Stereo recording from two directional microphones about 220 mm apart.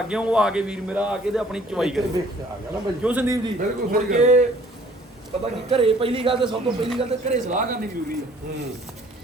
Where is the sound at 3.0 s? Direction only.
10° right (ahead or behind).